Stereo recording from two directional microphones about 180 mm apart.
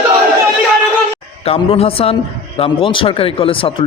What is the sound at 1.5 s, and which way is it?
A man's voice, 30° left (ahead or behind).